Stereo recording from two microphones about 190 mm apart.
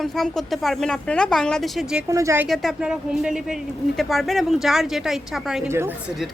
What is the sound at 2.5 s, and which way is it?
A woman's voice, centre (ahead or behind).